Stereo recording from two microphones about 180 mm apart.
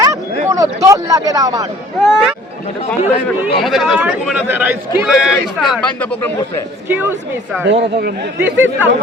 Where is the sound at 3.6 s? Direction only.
Centre (ahead or behind).